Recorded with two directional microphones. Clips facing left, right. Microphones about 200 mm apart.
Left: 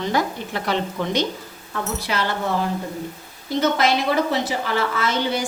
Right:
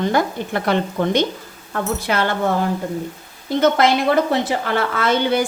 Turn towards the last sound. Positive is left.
turn(degrees=-60)  # may be behind; listen again after turning